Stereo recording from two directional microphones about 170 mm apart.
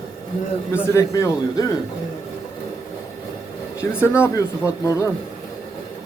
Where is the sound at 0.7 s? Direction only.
15° left (ahead or behind).